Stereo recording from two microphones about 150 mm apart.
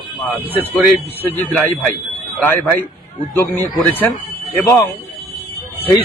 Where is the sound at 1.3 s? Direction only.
10° left (ahead or behind).